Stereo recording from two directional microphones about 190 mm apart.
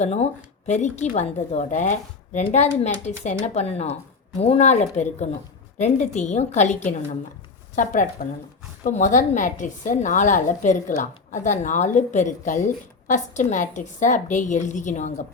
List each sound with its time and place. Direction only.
0.0 s a woman's voice: 35° left (ahead or behind)